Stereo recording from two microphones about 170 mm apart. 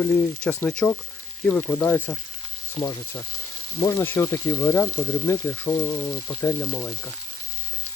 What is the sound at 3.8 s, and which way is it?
Speech, 10° left (ahead or behind).